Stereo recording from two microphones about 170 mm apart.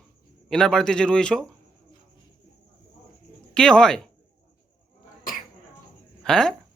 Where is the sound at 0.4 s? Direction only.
5° left (ahead or behind).